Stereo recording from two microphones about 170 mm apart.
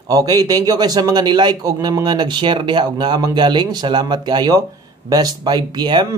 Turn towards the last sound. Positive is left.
turn(degrees=-25)  # may be behind; listen again after turning